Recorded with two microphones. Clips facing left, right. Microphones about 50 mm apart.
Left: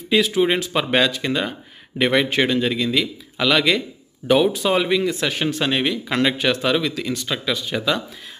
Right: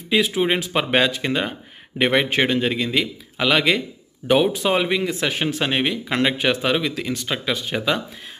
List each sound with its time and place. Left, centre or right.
0.1 s speech: right